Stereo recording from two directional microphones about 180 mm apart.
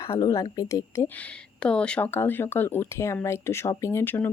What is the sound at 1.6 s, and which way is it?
Speech, 5° left (ahead or behind).